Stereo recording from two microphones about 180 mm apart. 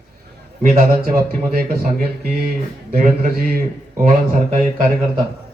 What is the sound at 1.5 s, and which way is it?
A man's voice, 55° right (ahead or behind).